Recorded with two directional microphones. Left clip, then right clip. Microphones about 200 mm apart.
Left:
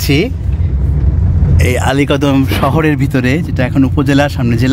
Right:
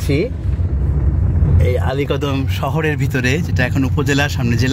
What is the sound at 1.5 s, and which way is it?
Speech, 20° left (ahead or behind).